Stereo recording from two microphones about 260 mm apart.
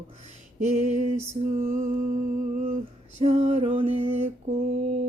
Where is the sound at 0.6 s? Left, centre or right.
Right.